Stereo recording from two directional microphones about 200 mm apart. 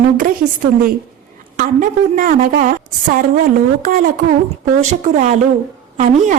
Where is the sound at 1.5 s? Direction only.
40° right (ahead or behind).